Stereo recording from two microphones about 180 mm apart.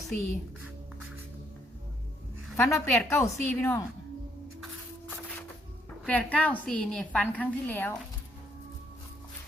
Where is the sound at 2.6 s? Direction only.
15° left (ahead or behind).